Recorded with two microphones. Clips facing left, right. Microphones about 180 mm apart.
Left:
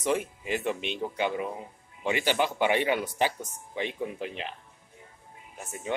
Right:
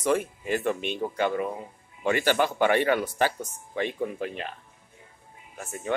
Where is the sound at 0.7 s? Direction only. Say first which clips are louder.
Right 3 dB; 50° right (ahead or behind).